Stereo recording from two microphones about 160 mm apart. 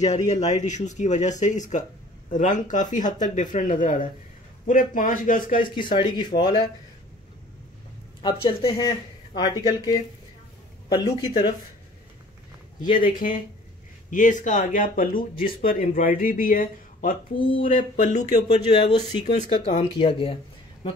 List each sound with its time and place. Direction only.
0.0 s speech: 45° left (ahead or behind)
5.8 s speech: 30° left (ahead or behind)
8.2 s speech: 30° left (ahead or behind)
12.9 s speech: 55° left (ahead or behind)
18.7 s speech: 35° left (ahead or behind); by 19.9 s 50° left (ahead or behind)
20.0 s speech: 35° left (ahead or behind)